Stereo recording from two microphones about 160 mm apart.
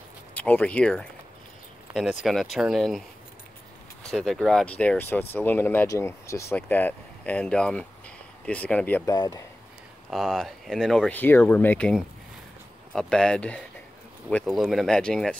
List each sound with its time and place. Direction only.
0.3 s speech: 10° left (ahead or behind)
2.2 s speech: centre (ahead or behind)
4.0 s speech: centre (ahead or behind)
9.1 s speech: 25° left (ahead or behind)
10.1 s speech: centre (ahead or behind)